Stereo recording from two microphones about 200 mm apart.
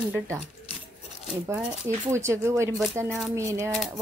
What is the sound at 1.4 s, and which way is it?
Speech, 10° right (ahead or behind).